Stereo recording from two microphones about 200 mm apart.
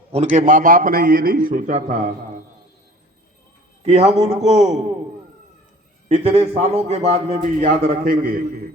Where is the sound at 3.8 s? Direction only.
30° right (ahead or behind).